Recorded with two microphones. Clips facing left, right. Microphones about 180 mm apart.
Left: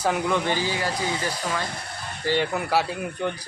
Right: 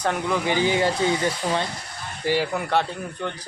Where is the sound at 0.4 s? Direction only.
20° right (ahead or behind).